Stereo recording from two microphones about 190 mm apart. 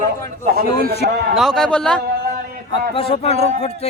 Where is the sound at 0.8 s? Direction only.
55° right (ahead or behind).